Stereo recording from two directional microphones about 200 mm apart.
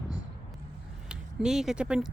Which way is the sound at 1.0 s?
5° right (ahead or behind).